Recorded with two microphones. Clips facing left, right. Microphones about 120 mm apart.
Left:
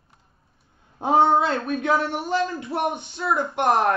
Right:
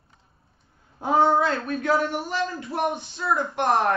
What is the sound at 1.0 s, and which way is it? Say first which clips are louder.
Speech: left 2 dB; 25° left (ahead or behind).